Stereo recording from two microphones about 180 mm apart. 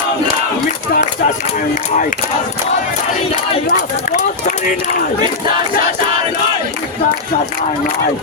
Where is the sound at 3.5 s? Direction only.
45° left (ahead or behind).